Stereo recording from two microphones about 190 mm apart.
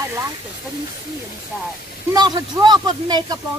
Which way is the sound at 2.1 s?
20° right (ahead or behind).